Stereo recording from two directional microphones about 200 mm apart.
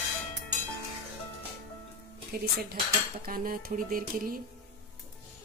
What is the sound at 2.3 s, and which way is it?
A woman's voice, 50° right (ahead or behind).